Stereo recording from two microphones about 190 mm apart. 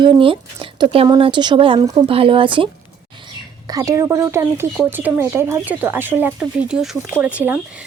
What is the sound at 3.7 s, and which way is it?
A woman's voice, 20° right (ahead or behind).